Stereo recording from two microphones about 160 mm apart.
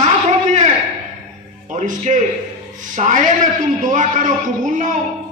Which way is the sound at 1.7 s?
50° right (ahead or behind).